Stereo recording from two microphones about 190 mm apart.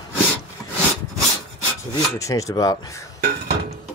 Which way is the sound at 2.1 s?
15° left (ahead or behind).